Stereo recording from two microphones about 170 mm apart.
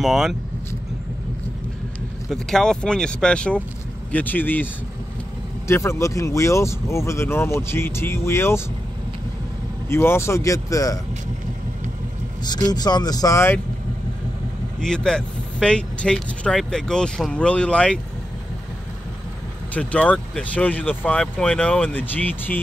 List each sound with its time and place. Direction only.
0.0 s speech: centre (ahead or behind)
2.2 s speech: 5° left (ahead or behind)
5.7 s speech: 15° left (ahead or behind)
9.8 s speech: 15° left (ahead or behind)
12.4 s speech: 25° left (ahead or behind)
14.8 s speech: 5° left (ahead or behind)
19.7 s speech: 10° left (ahead or behind)